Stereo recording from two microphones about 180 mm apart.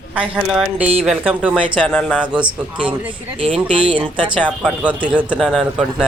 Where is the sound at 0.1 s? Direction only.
5° right (ahead or behind).